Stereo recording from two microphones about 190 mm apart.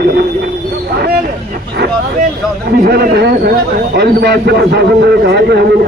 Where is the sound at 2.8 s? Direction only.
55° right (ahead or behind).